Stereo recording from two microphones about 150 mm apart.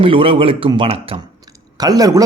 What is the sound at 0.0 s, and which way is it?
Speech, 35° right (ahead or behind).